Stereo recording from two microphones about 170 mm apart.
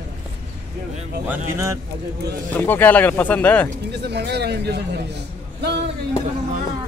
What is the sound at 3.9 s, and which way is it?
A man's voice, 80° right.